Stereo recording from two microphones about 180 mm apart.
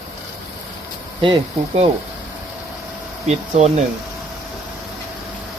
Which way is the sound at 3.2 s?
40° right (ahead or behind).